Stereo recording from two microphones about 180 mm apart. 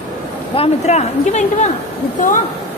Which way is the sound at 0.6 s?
40° left (ahead or behind).